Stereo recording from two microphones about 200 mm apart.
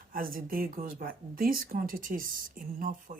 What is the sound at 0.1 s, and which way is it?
Speech, 45° right (ahead or behind).